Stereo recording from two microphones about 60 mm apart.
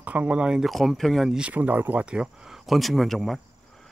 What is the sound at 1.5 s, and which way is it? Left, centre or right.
Speech, right.